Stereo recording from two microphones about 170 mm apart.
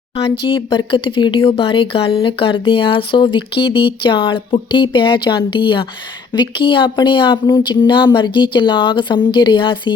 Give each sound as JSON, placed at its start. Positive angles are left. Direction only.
{"t": 0.4, "sound": "speech", "side_deg": 30}